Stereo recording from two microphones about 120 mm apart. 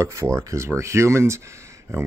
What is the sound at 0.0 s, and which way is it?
Speech, 25° right (ahead or behind).